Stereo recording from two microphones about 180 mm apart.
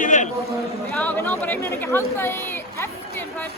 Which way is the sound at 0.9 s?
10° left (ahead or behind).